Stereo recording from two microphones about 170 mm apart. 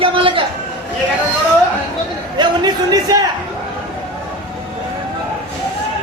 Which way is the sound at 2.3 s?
25° right (ahead or behind).